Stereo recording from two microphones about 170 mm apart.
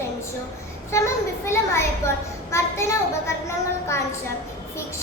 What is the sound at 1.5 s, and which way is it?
A woman's voice, 15° left (ahead or behind).